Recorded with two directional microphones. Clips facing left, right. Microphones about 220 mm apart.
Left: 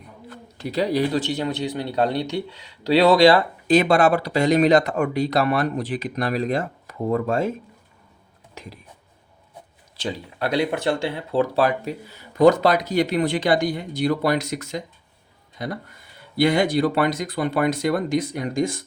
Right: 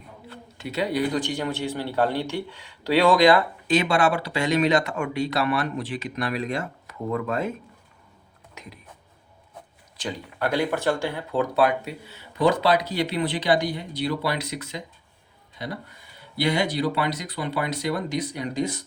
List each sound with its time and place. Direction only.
0.3 s a man's voice: 35° left (ahead or behind)
10.0 s speech: 25° left (ahead or behind); by 18.8 s 50° left (ahead or behind)